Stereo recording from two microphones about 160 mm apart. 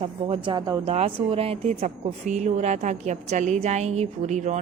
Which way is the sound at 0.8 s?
40° right (ahead or behind).